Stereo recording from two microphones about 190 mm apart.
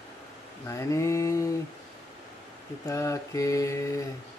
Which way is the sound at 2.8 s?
15° left (ahead or behind).